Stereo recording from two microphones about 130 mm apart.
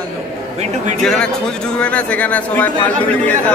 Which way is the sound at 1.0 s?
5° left (ahead or behind).